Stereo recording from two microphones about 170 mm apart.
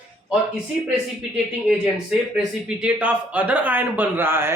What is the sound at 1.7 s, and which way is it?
Speech, 5° right (ahead or behind).